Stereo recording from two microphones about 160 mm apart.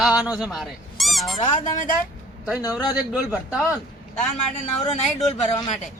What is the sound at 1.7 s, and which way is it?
Speech, 55° left (ahead or behind).